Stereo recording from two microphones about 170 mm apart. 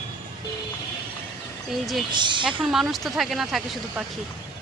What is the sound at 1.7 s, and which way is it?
Speech, centre (ahead or behind).